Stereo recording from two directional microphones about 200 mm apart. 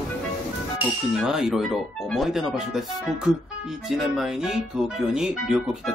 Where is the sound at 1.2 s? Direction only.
Centre (ahead or behind).